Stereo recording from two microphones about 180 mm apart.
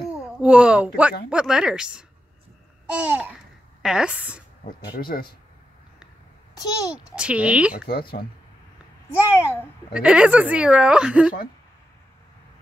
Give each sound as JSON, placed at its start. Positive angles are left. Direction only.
{"t": 0.4, "sound": "speech", "side_deg": -5}
{"t": 4.6, "sound": "speech", "side_deg": 55}
{"t": 6.5, "sound": "a child's voice", "side_deg": 20}
{"t": 7.0, "sound": "speech", "side_deg": -5}
{"t": 9.1, "sound": "a child's voice", "side_deg": 15}
{"t": 9.9, "sound": "speech", "side_deg": -5}